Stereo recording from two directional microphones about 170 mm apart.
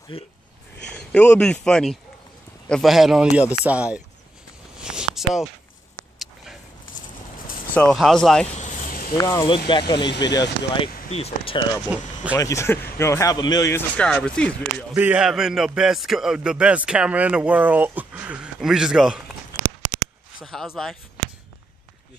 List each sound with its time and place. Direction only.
0.1 s speech: 30° left (ahead or behind)
0.9 s a man's voice: 5° left (ahead or behind)
4.7 s a sound: 5° right (ahead or behind)
7.7 s a man's voice: 5° left (ahead or behind)
8.5 s a sound: 50° left (ahead or behind)
9.1 s speech: 20° left (ahead or behind)
11.1 s speech: 35° left (ahead or behind); by 14.5 s 5° left (ahead or behind)
15.0 s a man's voice: 5° right (ahead or behind)
20.4 s a man's voice: centre (ahead or behind)